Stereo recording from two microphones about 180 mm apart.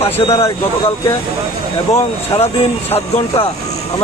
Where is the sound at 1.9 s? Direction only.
35° left (ahead or behind).